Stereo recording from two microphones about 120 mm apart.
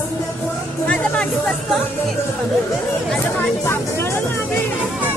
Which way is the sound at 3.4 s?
20° left (ahead or behind).